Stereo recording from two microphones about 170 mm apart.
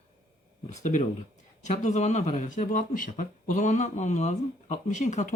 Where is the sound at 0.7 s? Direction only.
45° left (ahead or behind).